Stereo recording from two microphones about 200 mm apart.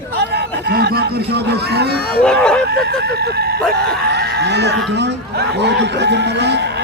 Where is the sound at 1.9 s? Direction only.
50° left (ahead or behind).